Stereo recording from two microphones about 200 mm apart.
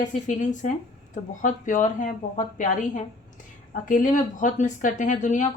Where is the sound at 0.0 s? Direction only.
40° left (ahead or behind).